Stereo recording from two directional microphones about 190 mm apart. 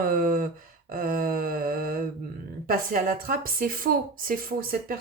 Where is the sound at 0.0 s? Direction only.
50° right (ahead or behind).